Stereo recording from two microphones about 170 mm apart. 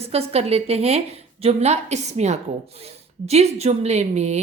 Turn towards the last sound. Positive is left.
turn(degrees=-40)  # may be behind; listen again after turning